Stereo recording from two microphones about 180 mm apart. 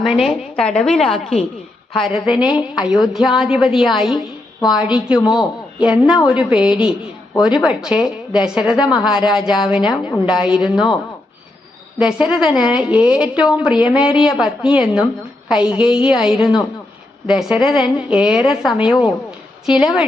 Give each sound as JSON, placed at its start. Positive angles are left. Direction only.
{"t": 0.0, "sound": "a woman's voice", "side_deg": 0}
{"t": 11.9, "sound": "a woman's voice", "side_deg": -5}